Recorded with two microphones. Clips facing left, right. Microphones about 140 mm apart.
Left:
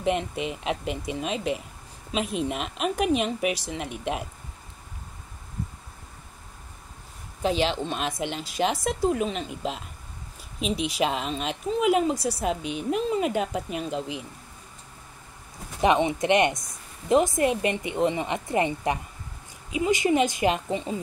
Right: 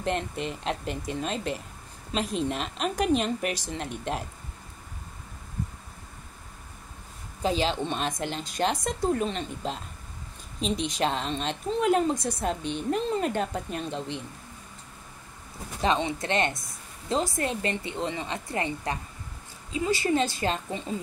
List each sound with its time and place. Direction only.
0.0 s a woman's voice: 5° left (ahead or behind)
7.4 s a woman's voice: 5° left (ahead or behind)
15.8 s a woman's voice: 15° left (ahead or behind)